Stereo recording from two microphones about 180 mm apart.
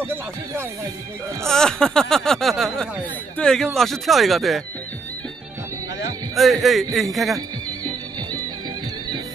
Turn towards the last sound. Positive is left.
turn(degrees=0)  # may be behind; listen again after turning